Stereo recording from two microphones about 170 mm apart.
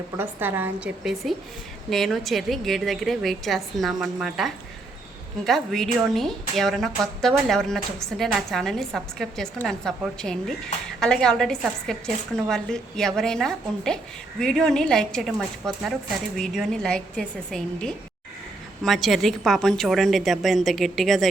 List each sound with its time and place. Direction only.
0.2 s a woman's voice: 10° right (ahead or behind)